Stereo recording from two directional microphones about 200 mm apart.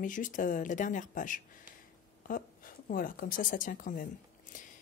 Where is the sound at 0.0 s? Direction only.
40° left (ahead or behind).